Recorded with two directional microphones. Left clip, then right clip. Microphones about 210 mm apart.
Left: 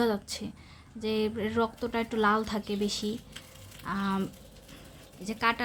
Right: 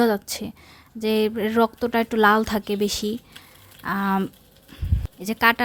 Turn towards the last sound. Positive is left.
turn(degrees=-40)  # may be behind; listen again after turning